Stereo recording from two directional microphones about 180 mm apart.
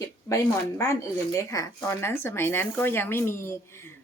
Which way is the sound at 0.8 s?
15° left (ahead or behind).